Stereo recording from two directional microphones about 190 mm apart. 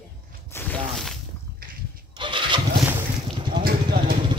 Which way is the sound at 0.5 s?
10° left (ahead or behind).